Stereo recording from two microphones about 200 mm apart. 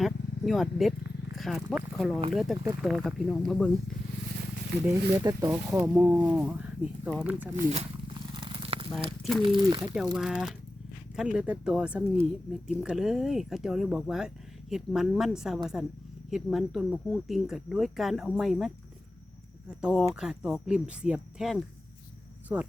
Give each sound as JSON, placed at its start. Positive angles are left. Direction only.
{"t": 0.0, "sound": "speech", "side_deg": 0}
{"t": 4.9, "sound": "speech", "side_deg": -15}
{"t": 7.6, "sound": "speech", "side_deg": -35}
{"t": 8.3, "sound": "a sound", "side_deg": -25}
{"t": 9.4, "sound": "speech", "side_deg": -25}
{"t": 9.8, "sound": "speech", "side_deg": -5}